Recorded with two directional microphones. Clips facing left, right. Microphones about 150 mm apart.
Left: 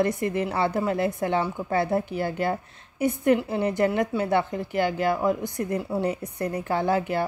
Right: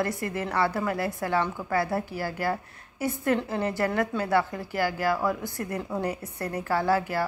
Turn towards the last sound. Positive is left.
turn(degrees=20)  # may be behind; listen again after turning